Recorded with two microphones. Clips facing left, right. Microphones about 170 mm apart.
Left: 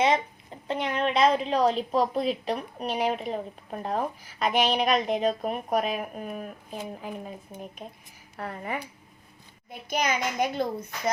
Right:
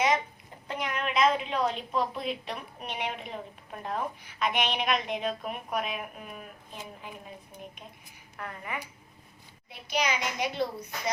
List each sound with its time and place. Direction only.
0.7 s a woman's voice: 30° left (ahead or behind)
9.6 s a child's voice: 50° left (ahead or behind)